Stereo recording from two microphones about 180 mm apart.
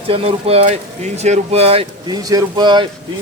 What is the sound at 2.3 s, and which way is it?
Speech, 20° right (ahead or behind).